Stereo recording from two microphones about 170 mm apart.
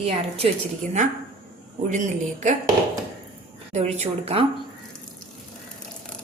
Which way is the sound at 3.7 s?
40° right (ahead or behind).